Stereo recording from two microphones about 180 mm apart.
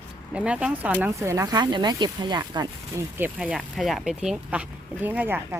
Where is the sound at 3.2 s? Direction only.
5° right (ahead or behind).